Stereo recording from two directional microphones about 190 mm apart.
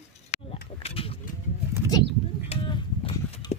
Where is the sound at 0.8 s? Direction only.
30° left (ahead or behind).